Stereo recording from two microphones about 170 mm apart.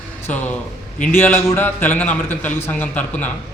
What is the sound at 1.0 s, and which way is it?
A man's voice, 10° left (ahead or behind).